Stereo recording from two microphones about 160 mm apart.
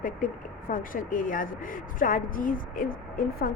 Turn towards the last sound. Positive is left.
turn(degrees=60)  # may be behind; listen again after turning